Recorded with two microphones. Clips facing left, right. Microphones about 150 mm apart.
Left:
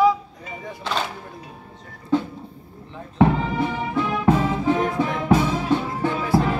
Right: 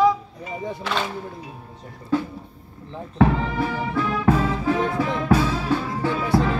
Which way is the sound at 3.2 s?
20° left (ahead or behind).